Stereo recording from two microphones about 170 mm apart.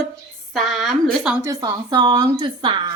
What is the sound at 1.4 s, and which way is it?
A woman's voice, 20° right (ahead or behind).